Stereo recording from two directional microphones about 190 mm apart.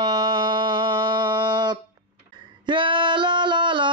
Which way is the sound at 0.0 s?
25° right (ahead or behind).